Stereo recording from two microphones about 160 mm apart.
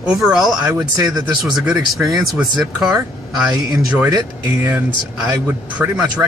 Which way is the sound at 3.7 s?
20° right (ahead or behind).